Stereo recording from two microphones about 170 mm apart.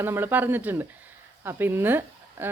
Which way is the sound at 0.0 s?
10° right (ahead or behind).